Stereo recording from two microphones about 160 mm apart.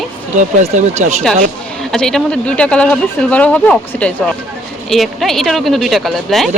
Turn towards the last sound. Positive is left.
turn(degrees=0)  # may be behind; listen again after turning